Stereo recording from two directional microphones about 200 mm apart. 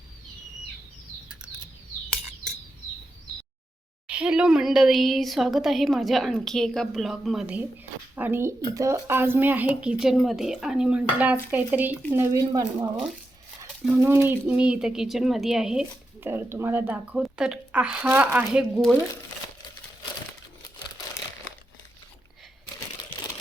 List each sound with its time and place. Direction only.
4.0 s speech: 5° right (ahead or behind)